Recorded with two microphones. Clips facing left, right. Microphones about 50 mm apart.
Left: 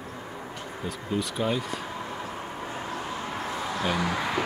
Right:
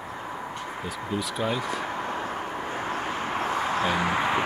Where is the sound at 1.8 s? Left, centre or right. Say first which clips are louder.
Right 5 dB; right.